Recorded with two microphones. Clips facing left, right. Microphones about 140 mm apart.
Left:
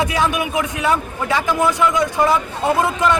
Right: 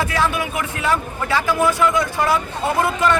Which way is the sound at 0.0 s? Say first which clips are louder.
Left 2 dB; 15° left (ahead or behind).